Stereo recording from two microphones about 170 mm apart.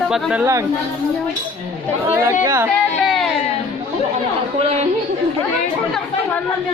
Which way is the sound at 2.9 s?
Centre (ahead or behind).